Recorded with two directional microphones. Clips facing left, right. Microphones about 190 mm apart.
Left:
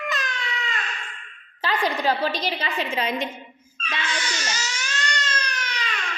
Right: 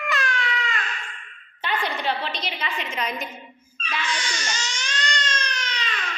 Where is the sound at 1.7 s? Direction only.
40° left (ahead or behind).